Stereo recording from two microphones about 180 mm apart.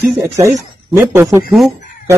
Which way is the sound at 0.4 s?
15° right (ahead or behind).